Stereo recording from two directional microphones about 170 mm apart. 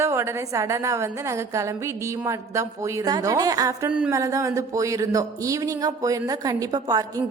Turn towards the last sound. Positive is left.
turn(degrees=-20)  # may be behind; listen again after turning